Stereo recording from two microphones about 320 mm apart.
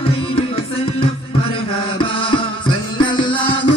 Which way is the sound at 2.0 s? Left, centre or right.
Centre.